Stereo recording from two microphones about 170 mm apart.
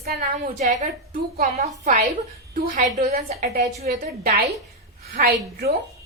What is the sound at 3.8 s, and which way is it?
Speech, 40° right (ahead or behind).